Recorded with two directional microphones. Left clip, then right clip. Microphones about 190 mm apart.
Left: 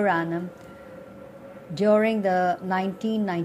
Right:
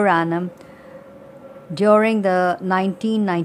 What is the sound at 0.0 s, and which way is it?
Speech, 25° right (ahead or behind).